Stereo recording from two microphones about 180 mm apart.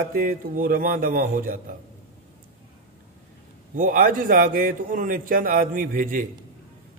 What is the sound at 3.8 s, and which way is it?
A man's voice, 50° right (ahead or behind).